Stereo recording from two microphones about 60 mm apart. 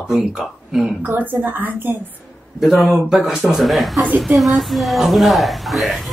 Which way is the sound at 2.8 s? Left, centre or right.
Centre.